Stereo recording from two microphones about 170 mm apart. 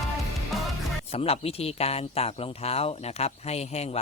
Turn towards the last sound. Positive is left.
turn(degrees=40)  # may be behind; listen again after turning